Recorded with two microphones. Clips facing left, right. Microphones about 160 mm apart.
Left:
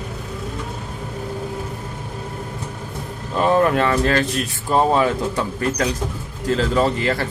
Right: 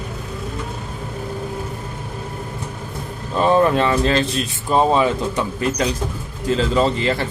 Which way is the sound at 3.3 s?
25° right (ahead or behind).